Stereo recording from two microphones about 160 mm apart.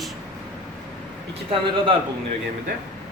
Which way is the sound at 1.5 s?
35° right (ahead or behind).